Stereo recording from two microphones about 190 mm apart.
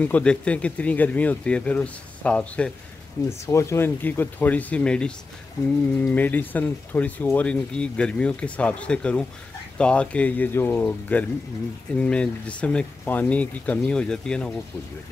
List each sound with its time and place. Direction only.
0.0 s speech: 5° left (ahead or behind)